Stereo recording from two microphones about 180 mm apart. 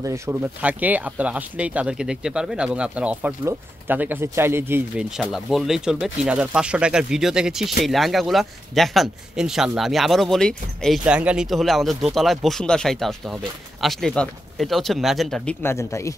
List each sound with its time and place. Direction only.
0.0 s speech: 15° right (ahead or behind); by 15.5 s centre (ahead or behind)
15.6 s speech: 15° left (ahead or behind)